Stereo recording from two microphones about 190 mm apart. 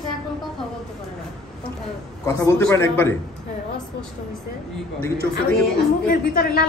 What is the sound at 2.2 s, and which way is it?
Speech, 15° left (ahead or behind).